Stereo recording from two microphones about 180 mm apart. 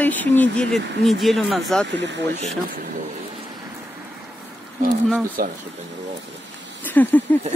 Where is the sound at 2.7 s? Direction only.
50° right (ahead or behind).